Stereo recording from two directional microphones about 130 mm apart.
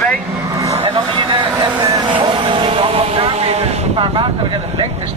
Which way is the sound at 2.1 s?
40° right (ahead or behind).